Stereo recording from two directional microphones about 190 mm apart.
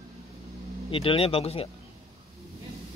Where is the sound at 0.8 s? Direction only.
30° left (ahead or behind).